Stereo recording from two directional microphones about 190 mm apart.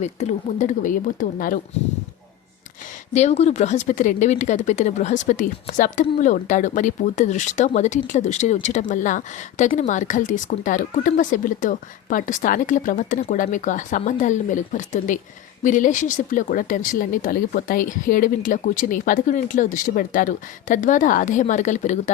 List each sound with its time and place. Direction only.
0.0 s speech: 35° left (ahead or behind)
3.1 s speech: 35° left (ahead or behind)